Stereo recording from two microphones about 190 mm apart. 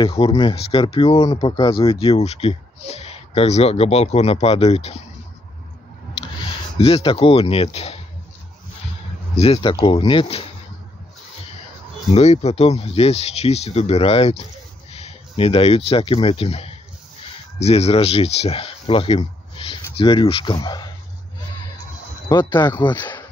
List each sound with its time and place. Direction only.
0.0 s speech: 30° left (ahead or behind)
6.8 s speech: 30° left (ahead or behind)
9.4 s speech: 30° left (ahead or behind)
12.1 s speech: 35° left (ahead or behind)
22.3 s speech: 15° left (ahead or behind)